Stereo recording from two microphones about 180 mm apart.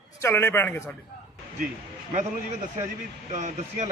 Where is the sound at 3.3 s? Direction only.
40° right (ahead or behind).